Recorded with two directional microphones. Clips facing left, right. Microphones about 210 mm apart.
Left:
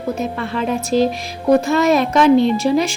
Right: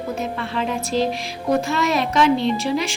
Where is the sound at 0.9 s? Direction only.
45° left (ahead or behind).